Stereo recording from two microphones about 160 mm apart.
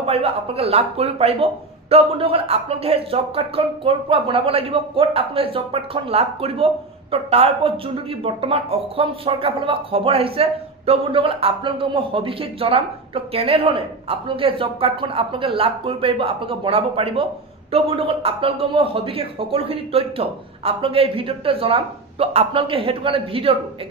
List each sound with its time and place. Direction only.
0.0 s speech: 40° right (ahead or behind)